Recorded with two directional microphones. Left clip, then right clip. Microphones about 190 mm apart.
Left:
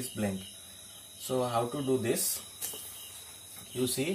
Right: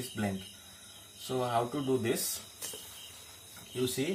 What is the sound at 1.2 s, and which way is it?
Speech, 10° left (ahead or behind).